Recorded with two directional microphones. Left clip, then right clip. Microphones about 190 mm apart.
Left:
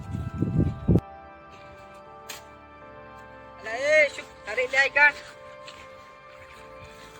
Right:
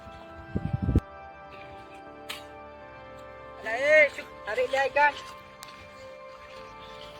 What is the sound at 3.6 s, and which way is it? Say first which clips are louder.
Music: even; 25° right (ahead or behind).